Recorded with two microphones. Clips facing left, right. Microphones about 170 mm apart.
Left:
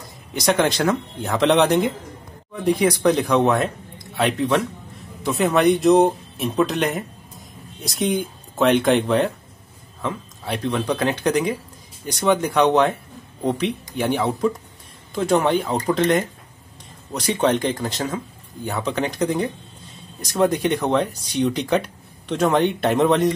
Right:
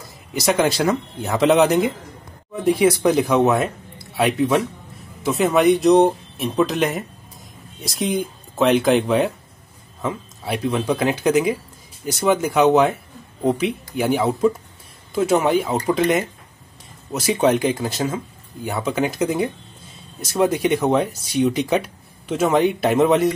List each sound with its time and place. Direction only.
0.3 s speech: centre (ahead or behind)